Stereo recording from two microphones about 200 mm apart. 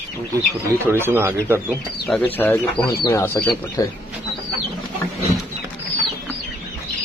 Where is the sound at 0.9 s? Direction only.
10° right (ahead or behind).